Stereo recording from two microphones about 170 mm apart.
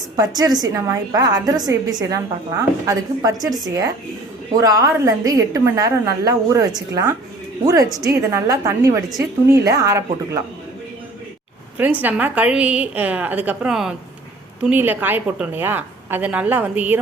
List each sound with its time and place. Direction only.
0.2 s a woman's voice: 20° right (ahead or behind)
11.8 s a woman's voice: 10° right (ahead or behind)